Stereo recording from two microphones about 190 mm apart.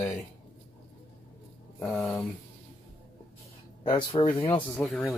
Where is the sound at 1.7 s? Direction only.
5° left (ahead or behind).